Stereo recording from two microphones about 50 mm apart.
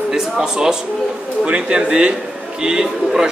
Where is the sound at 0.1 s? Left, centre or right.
Centre.